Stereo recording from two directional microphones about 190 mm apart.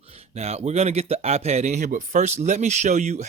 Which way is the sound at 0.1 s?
35° right (ahead or behind).